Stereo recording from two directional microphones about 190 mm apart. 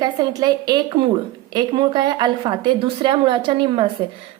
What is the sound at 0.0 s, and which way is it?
A woman's voice, 20° right (ahead or behind).